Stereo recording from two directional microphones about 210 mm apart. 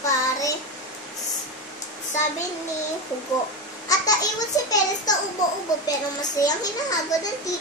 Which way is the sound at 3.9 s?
15° left (ahead or behind).